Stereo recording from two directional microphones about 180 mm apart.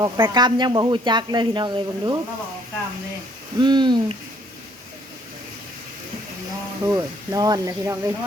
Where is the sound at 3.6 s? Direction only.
25° right (ahead or behind).